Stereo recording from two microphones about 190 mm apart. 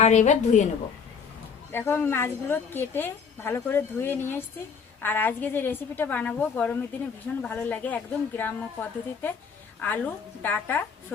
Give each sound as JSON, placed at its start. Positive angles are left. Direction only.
{"t": 0.0, "sound": "a woman's voice", "side_deg": 40}
{"t": 1.7, "sound": "a woman's voice", "side_deg": 10}